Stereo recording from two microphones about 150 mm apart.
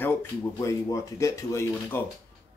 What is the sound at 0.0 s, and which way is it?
Speech, 15° left (ahead or behind).